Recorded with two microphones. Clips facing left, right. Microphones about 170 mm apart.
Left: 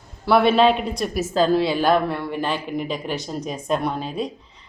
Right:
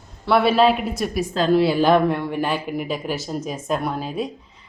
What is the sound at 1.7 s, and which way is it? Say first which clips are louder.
A woman's voice: right 3 dB; 15° right (ahead or behind).